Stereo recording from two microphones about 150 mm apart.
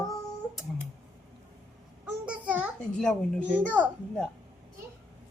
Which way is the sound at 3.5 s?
10° right (ahead or behind).